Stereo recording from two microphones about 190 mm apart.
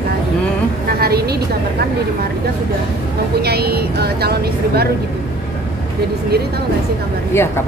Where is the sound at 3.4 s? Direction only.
55° right (ahead or behind).